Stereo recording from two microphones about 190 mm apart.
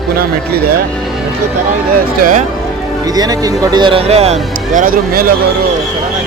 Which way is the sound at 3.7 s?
25° right (ahead or behind).